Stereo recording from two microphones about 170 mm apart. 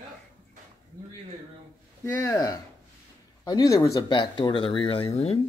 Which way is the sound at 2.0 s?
20° left (ahead or behind).